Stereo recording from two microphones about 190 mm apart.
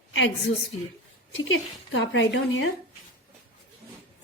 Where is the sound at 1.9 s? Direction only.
85° left.